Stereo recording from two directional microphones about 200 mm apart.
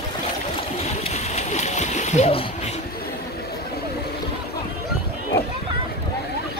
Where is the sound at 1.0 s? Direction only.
35° left (ahead or behind).